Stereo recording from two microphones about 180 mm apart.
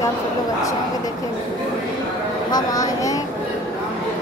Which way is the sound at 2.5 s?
20° left (ahead or behind).